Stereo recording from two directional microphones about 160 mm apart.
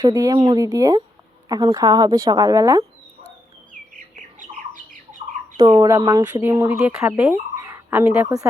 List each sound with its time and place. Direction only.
0.0 s a woman's voice: 20° right (ahead or behind)
5.5 s speech: 25° right (ahead or behind)